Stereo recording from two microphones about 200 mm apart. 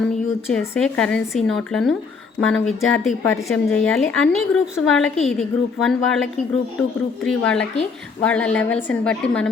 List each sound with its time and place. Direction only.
0.6 s speech: 10° left (ahead or behind)